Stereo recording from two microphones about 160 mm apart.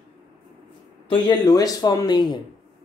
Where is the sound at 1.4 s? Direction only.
25° left (ahead or behind).